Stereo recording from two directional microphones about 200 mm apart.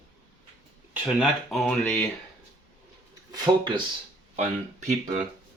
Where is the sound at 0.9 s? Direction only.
Centre (ahead or behind).